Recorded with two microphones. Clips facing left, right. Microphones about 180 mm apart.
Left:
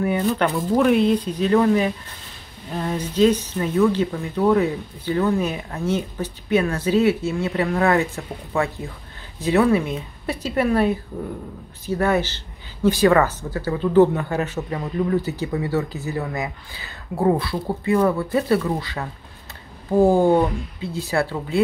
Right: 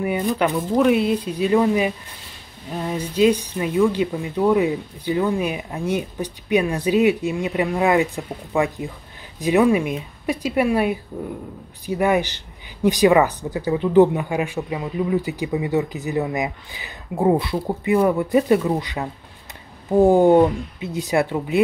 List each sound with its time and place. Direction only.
0.0 s speech: 15° right (ahead or behind)
0.6 s speech: 5° right (ahead or behind)